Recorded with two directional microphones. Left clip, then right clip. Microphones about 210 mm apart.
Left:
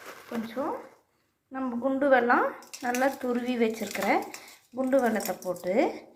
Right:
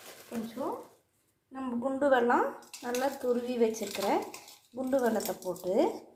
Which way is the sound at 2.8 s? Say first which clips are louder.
Left 4 dB; 15° left (ahead or behind).